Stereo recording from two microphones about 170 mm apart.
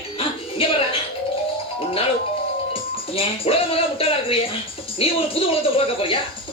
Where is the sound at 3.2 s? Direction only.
35° left (ahead or behind).